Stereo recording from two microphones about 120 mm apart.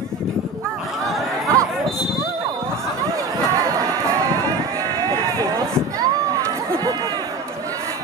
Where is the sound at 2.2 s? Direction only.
25° right (ahead or behind).